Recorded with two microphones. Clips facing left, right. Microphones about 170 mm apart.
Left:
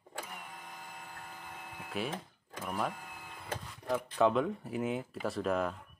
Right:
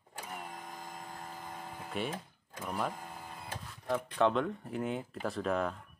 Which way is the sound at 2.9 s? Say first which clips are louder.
Right 3 dB; 35° right (ahead or behind).